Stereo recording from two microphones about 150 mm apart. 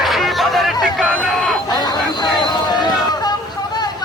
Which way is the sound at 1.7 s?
30° left (ahead or behind).